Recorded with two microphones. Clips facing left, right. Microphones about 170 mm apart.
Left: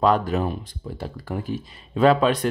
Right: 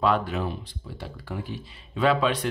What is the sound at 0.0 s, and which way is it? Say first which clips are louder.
Speech: left 4 dB; 40° left (ahead or behind).